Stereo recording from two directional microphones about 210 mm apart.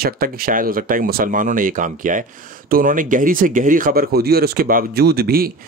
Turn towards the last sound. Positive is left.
turn(degrees=-45)  # may be behind; listen again after turning